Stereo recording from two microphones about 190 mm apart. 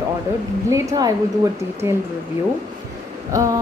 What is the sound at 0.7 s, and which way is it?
Speech, 20° right (ahead or behind).